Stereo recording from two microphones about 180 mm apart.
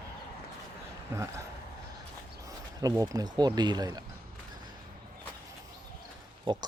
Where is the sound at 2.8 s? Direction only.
20° right (ahead or behind).